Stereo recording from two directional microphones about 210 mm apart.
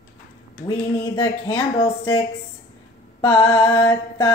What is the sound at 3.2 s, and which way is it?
Speech, 20° left (ahead or behind).